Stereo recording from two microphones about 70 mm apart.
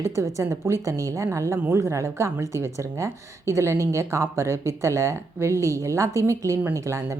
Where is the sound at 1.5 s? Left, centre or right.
Right.